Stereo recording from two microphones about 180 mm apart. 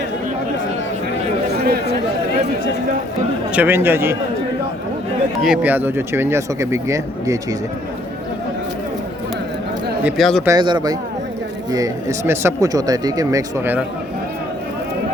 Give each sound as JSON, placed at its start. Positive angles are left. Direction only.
{"t": 1.5, "sound": "chatter", "side_deg": -60}
{"t": 3.5, "sound": "speech", "side_deg": -10}
{"t": 5.4, "sound": "speech", "side_deg": -5}
{"t": 10.0, "sound": "speech", "side_deg": -5}
{"t": 10.4, "sound": "speech", "side_deg": -20}